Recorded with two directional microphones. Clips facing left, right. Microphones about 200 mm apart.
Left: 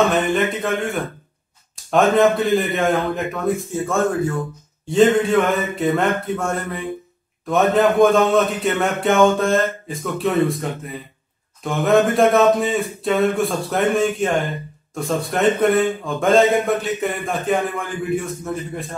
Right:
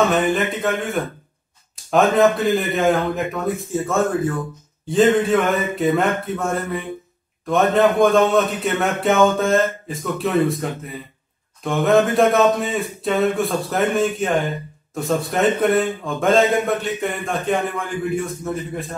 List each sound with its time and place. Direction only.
0.0 s a man's voice: centre (ahead or behind)